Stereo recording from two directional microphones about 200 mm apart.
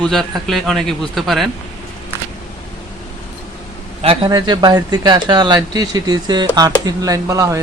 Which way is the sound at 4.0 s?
25° right (ahead or behind).